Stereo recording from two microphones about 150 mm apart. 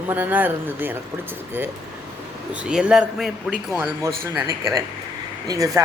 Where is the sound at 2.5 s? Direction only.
5° right (ahead or behind).